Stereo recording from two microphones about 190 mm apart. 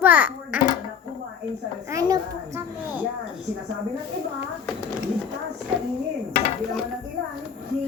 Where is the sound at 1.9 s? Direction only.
15° right (ahead or behind).